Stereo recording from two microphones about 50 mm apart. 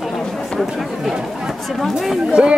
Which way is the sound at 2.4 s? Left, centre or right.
Centre.